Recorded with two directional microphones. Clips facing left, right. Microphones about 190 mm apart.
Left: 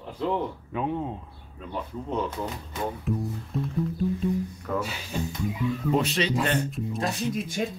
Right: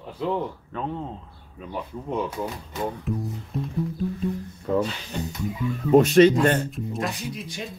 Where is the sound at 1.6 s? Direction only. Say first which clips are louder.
Right 1 dB; 10° right (ahead or behind); by 5.6 s 5° left (ahead or behind).